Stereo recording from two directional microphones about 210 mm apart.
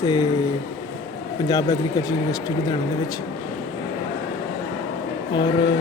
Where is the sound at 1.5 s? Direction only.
15° left (ahead or behind).